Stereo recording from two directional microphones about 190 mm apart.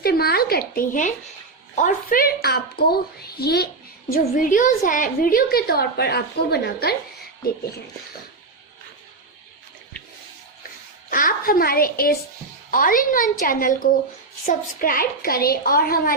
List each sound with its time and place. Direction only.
0.0 s a woman's voice: 55° left (ahead or behind)
4.1 s a woman's voice: 45° left (ahead or behind)
11.1 s a woman's voice: 45° left (ahead or behind)